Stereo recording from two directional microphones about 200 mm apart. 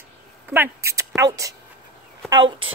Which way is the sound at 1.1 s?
15° right (ahead or behind).